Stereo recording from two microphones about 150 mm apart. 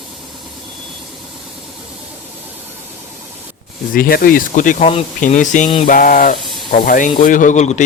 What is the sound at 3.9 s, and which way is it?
A man's voice, 75° left (ahead or behind).